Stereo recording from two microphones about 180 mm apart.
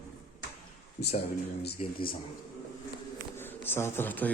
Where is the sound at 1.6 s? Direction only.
55° left (ahead or behind).